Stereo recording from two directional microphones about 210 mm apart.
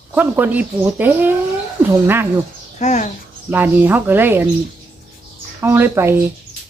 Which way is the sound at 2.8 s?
35° left (ahead or behind).